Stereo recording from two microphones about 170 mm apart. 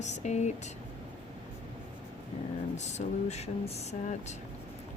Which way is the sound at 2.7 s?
40° left (ahead or behind).